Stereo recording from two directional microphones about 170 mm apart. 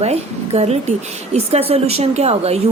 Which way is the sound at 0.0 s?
40° right (ahead or behind).